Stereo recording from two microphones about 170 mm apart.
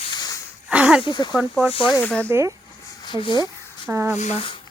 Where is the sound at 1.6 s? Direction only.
35° left (ahead or behind).